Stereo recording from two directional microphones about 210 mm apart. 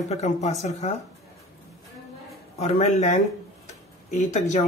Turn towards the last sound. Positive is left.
turn(degrees=35)  # may be behind; listen again after turning